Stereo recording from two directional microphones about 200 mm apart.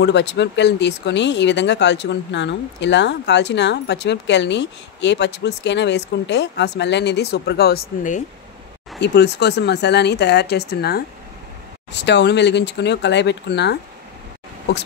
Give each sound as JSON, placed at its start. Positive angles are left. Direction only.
{"t": 0.0, "sound": "speech", "side_deg": 60}
{"t": 9.0, "sound": "speech", "side_deg": 55}